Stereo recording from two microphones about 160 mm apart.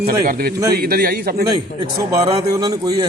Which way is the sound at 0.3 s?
70° right (ahead or behind).